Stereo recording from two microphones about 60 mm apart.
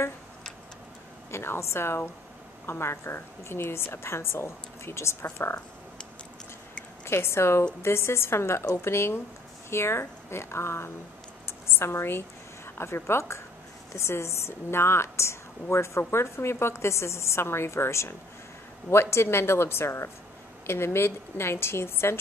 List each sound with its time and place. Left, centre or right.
1.3 s a woman's voice: left
7.1 s a woman's voice: left
11.4 s a sound: left
12.7 s a woman's voice: left